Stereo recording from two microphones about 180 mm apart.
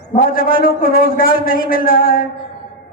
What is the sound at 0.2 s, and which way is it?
A man's voice, 50° left (ahead or behind).